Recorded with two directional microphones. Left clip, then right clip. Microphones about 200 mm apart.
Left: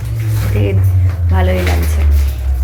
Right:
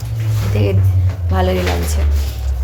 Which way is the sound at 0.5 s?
15° right (ahead or behind).